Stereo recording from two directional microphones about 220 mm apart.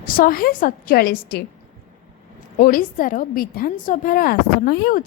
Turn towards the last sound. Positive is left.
turn(degrees=45)  # may be behind; listen again after turning